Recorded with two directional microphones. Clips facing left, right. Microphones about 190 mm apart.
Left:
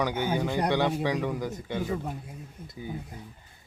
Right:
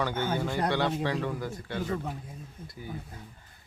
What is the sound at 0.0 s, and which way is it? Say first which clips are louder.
Speech: left 2 dB; 15° left (ahead or behind).